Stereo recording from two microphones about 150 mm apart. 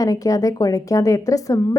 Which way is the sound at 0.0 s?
25° left (ahead or behind).